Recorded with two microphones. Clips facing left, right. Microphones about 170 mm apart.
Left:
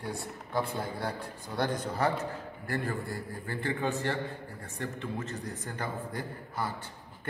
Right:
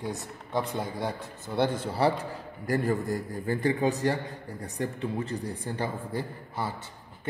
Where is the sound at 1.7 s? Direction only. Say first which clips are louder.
Right 4 dB; 30° right (ahead or behind).